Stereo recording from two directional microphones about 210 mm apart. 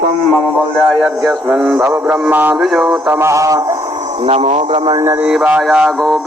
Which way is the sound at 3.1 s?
15° right (ahead or behind).